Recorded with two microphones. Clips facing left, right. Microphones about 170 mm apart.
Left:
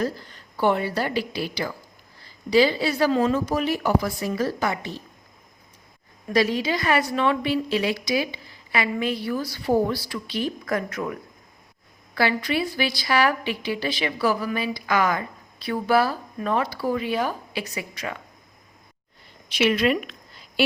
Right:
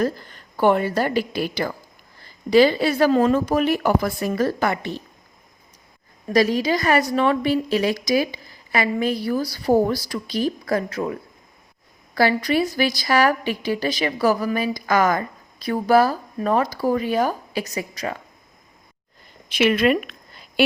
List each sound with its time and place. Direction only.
0.0 s a woman's voice: 50° right (ahead or behind)
6.3 s a woman's voice: 40° right (ahead or behind)
19.5 s speech: 50° right (ahead or behind)